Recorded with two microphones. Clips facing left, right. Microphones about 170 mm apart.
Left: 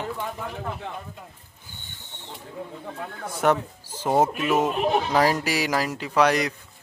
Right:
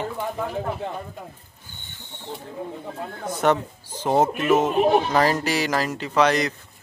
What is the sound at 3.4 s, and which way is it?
Speech, 5° left (ahead or behind).